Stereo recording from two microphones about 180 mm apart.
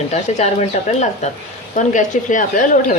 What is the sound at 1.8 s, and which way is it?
Speech, 45° left (ahead or behind).